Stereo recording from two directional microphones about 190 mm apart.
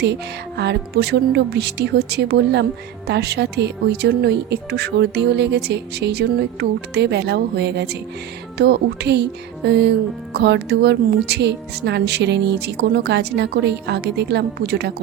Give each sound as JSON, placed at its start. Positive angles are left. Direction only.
{"t": 0.0, "sound": "speech", "side_deg": -60}